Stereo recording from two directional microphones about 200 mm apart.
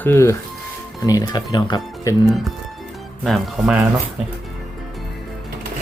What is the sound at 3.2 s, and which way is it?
Speech, centre (ahead or behind).